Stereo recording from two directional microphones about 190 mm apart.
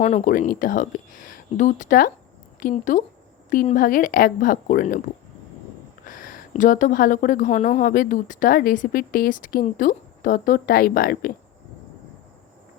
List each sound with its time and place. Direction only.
0.0 s speech: 40° left (ahead or behind)
6.1 s speech: 45° left (ahead or behind)